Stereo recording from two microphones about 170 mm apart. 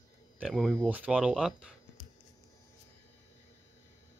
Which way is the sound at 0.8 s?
10° right (ahead or behind).